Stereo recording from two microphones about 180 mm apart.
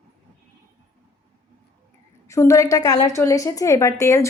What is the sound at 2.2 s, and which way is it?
A woman's voice, 15° left (ahead or behind).